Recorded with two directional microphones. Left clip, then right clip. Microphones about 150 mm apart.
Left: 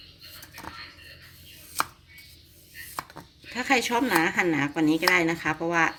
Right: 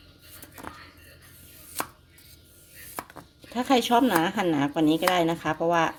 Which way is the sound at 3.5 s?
40° right (ahead or behind).